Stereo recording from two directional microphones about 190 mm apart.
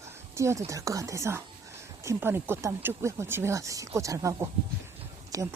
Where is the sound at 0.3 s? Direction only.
15° right (ahead or behind).